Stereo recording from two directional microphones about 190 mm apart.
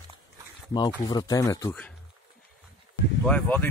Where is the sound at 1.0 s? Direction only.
20° left (ahead or behind).